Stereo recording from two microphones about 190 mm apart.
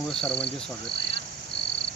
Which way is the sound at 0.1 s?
5° left (ahead or behind).